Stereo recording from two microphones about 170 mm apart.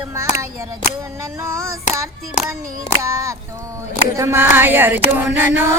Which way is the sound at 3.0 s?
15° right (ahead or behind).